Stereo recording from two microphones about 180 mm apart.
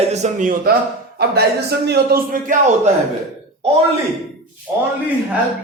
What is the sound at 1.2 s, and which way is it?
A man's voice, 65° right (ahead or behind).